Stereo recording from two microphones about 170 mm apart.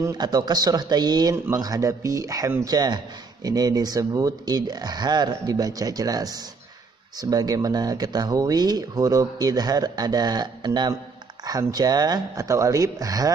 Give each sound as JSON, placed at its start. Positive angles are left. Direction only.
{"t": 0.0, "sound": "speech", "side_deg": -20}